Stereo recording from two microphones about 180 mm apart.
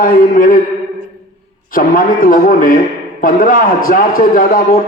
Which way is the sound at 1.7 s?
50° left (ahead or behind).